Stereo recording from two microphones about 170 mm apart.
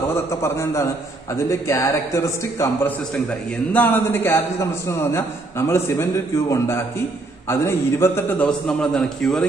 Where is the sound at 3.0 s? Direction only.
5° left (ahead or behind).